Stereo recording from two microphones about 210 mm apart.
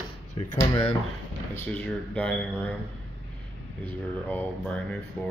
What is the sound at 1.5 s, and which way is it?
Speech, 10° left (ahead or behind).